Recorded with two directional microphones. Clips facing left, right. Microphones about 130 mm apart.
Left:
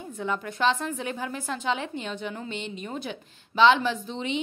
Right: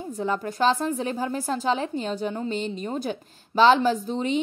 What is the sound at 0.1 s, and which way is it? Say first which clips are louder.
A woman's voice: right 3 dB; 35° right (ahead or behind).